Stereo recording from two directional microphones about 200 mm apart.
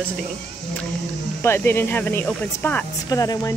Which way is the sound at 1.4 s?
10° left (ahead or behind).